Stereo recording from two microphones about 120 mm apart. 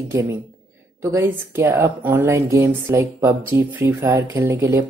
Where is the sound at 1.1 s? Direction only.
25° right (ahead or behind).